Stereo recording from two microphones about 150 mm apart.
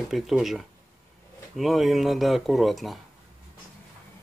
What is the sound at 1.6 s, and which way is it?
Speech, centre (ahead or behind).